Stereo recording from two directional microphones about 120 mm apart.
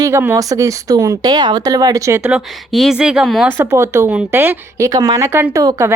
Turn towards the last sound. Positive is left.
turn(degrees=-30)  # may be behind; listen again after turning